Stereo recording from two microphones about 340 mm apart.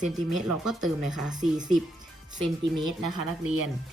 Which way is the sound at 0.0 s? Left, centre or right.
Centre.